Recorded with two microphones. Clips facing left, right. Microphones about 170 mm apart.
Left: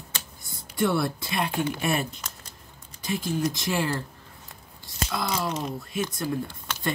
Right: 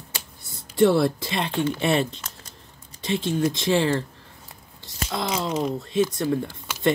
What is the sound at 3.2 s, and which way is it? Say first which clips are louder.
Speech: right 4 dB; 25° right (ahead or behind).